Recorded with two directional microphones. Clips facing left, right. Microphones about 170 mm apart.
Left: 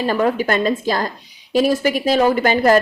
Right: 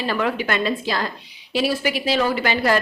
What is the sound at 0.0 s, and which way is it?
Speech, 40° left (ahead or behind).